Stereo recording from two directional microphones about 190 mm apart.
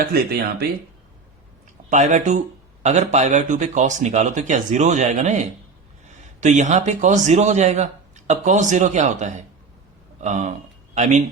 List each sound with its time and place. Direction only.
0.0 s speech: 55° right (ahead or behind)
1.9 s speech: 40° right (ahead or behind)